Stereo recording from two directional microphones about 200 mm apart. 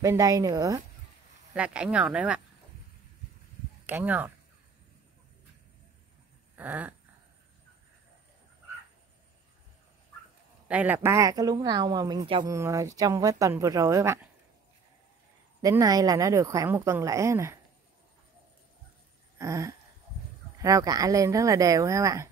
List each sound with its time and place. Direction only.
0.0 s a woman's voice: 15° right (ahead or behind)
1.5 s speech: 5° right (ahead or behind)
3.8 s speech: 10° right (ahead or behind)
6.5 s a sound: 10° right (ahead or behind)
10.7 s a woman's voice: 10° right (ahead or behind)
15.6 s a woman's voice: 15° right (ahead or behind)
19.3 s a sound: 15° right (ahead or behind)
20.5 s a woman's voice: 15° right (ahead or behind)